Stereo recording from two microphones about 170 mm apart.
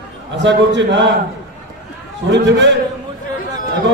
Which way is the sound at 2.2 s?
90° right.